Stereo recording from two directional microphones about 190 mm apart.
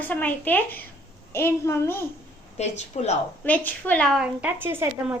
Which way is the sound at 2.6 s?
35° left (ahead or behind).